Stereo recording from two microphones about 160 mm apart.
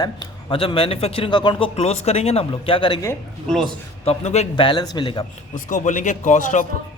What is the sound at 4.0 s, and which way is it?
Speech, 40° left (ahead or behind).